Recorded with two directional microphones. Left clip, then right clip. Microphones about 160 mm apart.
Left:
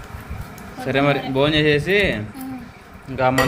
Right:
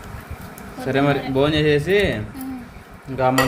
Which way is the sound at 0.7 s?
Centre (ahead or behind).